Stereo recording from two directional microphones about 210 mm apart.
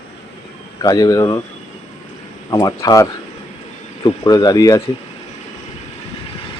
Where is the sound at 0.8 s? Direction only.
20° left (ahead or behind).